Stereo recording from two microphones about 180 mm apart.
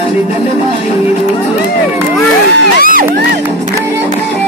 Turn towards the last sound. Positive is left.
turn(degrees=-50)  # may be behind; listen again after turning